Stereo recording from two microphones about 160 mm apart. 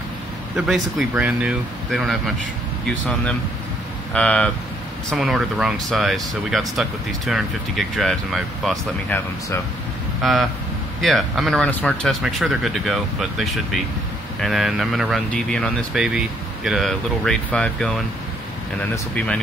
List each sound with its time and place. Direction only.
0.6 s speech: centre (ahead or behind)
4.1 s speech: 5° left (ahead or behind)
9.1 s speech: 10° left (ahead or behind)
10.2 s speech: centre (ahead or behind)